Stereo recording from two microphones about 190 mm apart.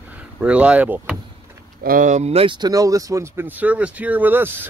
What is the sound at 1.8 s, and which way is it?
Speech, 45° right (ahead or behind).